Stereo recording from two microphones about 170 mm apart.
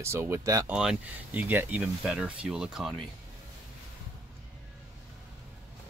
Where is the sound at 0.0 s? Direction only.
15° right (ahead or behind).